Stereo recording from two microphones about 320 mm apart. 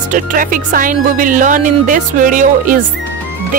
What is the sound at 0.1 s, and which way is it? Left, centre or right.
Speech, right.